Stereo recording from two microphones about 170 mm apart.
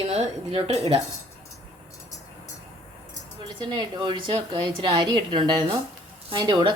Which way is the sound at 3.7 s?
25° right (ahead or behind).